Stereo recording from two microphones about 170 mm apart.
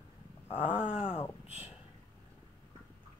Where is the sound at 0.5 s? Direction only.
35° left (ahead or behind).